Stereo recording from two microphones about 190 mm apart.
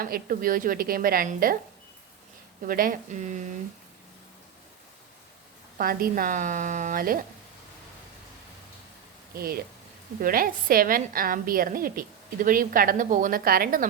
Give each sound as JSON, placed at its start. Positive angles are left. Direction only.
{"t": 0.0, "sound": "a woman's voice", "side_deg": -50}
{"t": 2.6, "sound": "a woman's voice", "side_deg": -50}
{"t": 5.7, "sound": "a woman's voice", "side_deg": -50}
{"t": 9.3, "sound": "a woman's voice", "side_deg": -50}